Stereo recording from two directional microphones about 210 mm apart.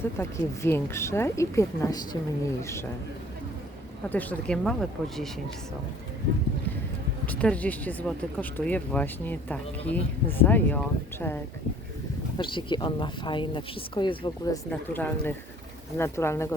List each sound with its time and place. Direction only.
0.0 s speech: 10° left (ahead or behind)
4.1 s speech: 5° left (ahead or behind)
7.3 s speech: 5° left (ahead or behind)
12.4 s speech: 25° left (ahead or behind)
14.7 s speech: 10° left (ahead or behind)